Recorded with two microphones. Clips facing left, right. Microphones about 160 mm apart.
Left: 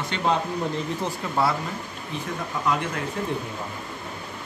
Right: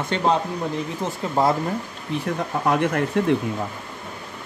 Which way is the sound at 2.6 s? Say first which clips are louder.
Right 6 dB; 55° right (ahead or behind).